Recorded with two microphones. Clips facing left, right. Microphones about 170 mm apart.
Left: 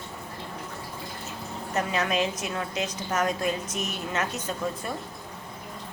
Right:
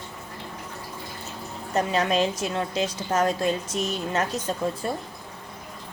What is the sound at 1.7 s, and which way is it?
A woman's voice, 30° right (ahead or behind).